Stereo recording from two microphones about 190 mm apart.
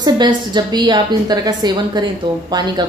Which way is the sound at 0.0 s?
20° right (ahead or behind).